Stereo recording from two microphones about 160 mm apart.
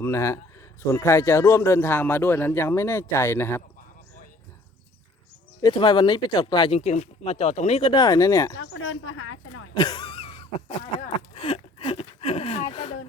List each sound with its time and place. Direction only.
0.0 s a man's voice: 15° left (ahead or behind)
5.6 s speech: 30° left (ahead or behind)
6.7 s speech: 40° left (ahead or behind); by 8.5 s 20° left (ahead or behind)
9.7 s a sound: 25° left (ahead or behind)
11.3 s gasp: 35° left (ahead or behind)